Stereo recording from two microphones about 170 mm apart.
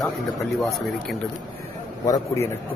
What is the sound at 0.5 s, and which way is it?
Speech, centre (ahead or behind).